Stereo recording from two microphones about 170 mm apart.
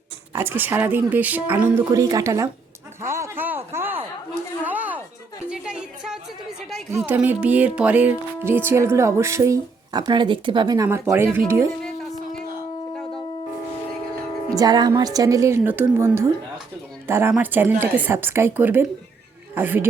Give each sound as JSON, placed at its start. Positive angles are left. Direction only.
{"t": 0.3, "sound": "a woman's voice", "side_deg": -10}
{"t": 3.0, "sound": "a sound", "side_deg": -15}
{"t": 5.5, "sound": "music", "side_deg": -5}
{"t": 6.9, "sound": "speech", "side_deg": -10}
{"t": 10.8, "sound": "speech", "side_deg": -15}
{"t": 14.5, "sound": "a woman's voice", "side_deg": -25}